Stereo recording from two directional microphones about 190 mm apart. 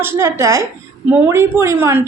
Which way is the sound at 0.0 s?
15° right (ahead or behind).